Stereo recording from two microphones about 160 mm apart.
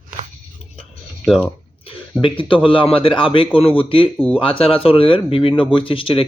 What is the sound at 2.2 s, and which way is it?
Speech, 30° left (ahead or behind).